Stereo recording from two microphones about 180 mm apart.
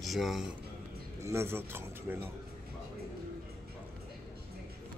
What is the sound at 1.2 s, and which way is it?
Speech, 15° right (ahead or behind).